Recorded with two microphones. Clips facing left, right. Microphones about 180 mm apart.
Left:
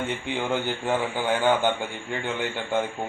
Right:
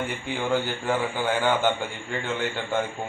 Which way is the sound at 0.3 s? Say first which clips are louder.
Right 2 dB; 20° left (ahead or behind).